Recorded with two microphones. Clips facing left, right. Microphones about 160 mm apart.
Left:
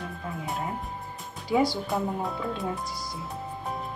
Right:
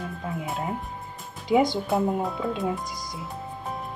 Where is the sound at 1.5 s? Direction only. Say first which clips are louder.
Right 3 dB; 20° right (ahead or behind).